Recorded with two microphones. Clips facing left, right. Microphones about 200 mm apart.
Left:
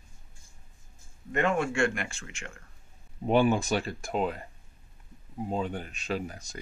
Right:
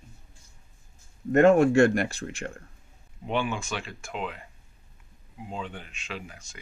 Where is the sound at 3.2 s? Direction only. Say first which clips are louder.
Left 6 dB; 40° left (ahead or behind).